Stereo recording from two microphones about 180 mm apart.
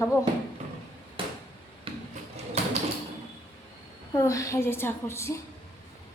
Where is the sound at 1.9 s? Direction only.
30° right (ahead or behind).